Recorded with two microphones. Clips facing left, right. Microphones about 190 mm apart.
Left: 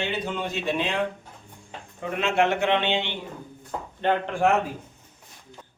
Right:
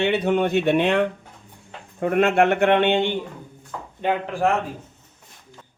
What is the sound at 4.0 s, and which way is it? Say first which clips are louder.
Speech: right 1 dB; 10° right (ahead or behind).